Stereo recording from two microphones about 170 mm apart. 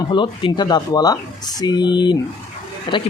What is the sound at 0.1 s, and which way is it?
Speech, 30° left (ahead or behind).